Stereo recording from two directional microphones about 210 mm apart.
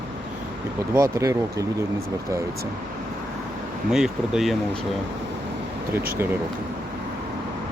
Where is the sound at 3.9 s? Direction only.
Centre (ahead or behind).